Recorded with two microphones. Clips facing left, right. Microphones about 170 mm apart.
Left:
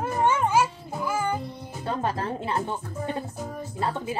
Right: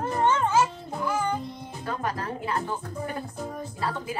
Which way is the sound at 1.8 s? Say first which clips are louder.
Left 3 dB; 25° left (ahead or behind).